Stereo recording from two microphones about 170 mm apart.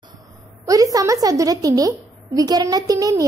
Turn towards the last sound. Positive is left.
turn(degrees=-20)  # may be behind; listen again after turning